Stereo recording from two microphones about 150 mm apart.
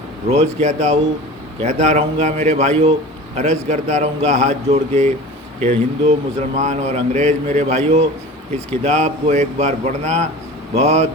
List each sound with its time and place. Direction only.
0.3 s a man's voice: 45° right (ahead or behind)